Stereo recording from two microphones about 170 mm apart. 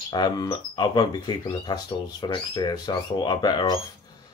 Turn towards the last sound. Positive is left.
turn(degrees=25)  # may be behind; listen again after turning